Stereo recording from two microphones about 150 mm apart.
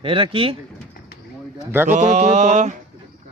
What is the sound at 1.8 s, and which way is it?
Mantra, 50° right (ahead or behind).